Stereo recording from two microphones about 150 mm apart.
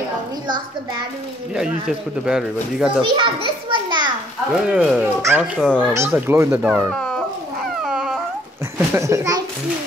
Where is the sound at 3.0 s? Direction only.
35° right (ahead or behind).